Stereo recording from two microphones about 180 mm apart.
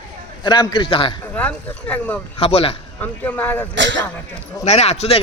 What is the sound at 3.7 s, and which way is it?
Speech, 85° right.